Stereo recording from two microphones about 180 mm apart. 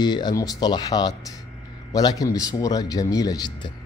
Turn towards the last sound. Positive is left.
turn(degrees=25)  # may be behind; listen again after turning